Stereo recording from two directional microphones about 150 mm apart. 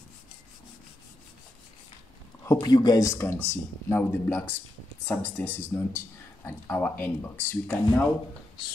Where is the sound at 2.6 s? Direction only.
30° left (ahead or behind); by 8.1 s 10° left (ahead or behind).